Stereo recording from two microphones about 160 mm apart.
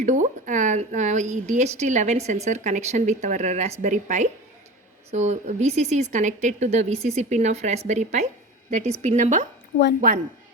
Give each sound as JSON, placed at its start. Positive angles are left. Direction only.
{"t": 0.0, "sound": "a woman's voice", "side_deg": -50}